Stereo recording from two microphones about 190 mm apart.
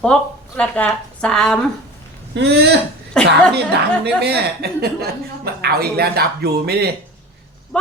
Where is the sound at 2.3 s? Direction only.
60° right (ahead or behind).